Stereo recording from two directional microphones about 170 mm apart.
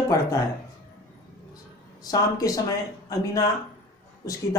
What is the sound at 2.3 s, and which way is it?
Speech, 20° left (ahead or behind).